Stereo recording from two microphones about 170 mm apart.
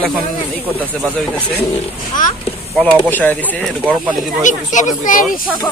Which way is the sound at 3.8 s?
5° right (ahead or behind).